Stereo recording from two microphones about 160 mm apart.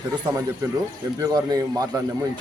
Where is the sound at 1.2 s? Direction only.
20° right (ahead or behind).